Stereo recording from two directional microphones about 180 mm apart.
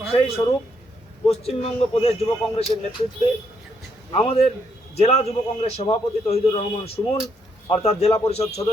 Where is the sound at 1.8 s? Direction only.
35° left (ahead or behind).